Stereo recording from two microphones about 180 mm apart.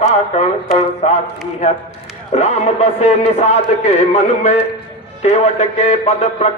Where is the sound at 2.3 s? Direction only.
40° left (ahead or behind).